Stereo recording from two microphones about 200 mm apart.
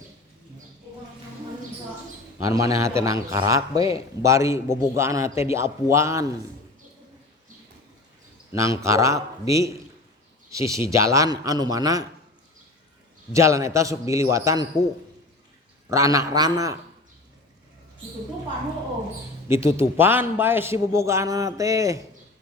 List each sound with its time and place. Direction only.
2.4 s a man's voice: 15° right (ahead or behind)
8.5 s a man's voice: 15° right (ahead or behind)
13.3 s a man's voice: 15° right (ahead or behind)
15.9 s a man's voice: 15° right (ahead or behind)
19.5 s a man's voice: 15° right (ahead or behind)